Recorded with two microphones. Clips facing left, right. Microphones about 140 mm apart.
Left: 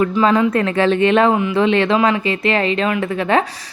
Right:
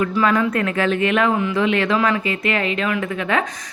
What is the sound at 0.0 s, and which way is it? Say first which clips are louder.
A woman's voice: left 4 dB; 25° left (ahead or behind).